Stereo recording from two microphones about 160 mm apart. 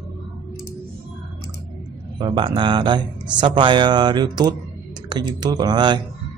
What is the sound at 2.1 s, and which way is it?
Speech, 30° right (ahead or behind).